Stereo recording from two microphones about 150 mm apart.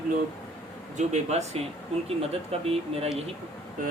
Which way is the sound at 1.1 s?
45° right (ahead or behind).